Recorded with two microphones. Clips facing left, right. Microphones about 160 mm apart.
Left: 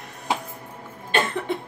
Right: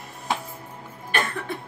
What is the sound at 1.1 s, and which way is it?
Cough, 25° left (ahead or behind).